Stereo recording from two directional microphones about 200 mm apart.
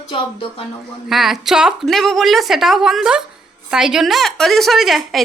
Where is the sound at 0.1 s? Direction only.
25° left (ahead or behind).